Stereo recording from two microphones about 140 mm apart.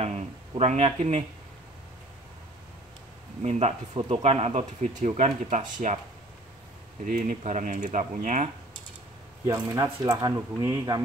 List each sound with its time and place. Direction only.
0.0 s a sound: 50° right (ahead or behind)
3.4 s speech: 50° right (ahead or behind)
7.1 s speech: 65° right (ahead or behind)
9.5 s speech: 25° right (ahead or behind)